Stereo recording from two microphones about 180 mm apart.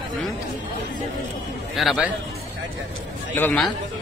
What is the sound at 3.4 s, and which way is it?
Speech, 5° left (ahead or behind).